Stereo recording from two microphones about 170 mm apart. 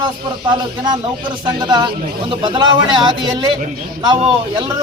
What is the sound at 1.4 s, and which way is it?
Speech, 25° right (ahead or behind).